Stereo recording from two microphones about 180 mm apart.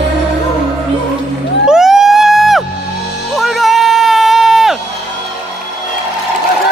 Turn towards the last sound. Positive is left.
turn(degrees=0)  # may be behind; listen again after turning